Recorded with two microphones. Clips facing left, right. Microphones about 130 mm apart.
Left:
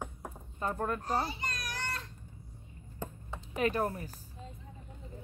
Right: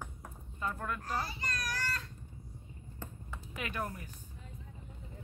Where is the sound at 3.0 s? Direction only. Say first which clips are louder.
Left 5 dB; 25° left (ahead or behind).